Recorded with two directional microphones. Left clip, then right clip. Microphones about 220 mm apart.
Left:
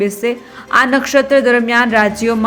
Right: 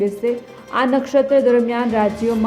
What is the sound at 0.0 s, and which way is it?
A woman's voice, 15° left (ahead or behind).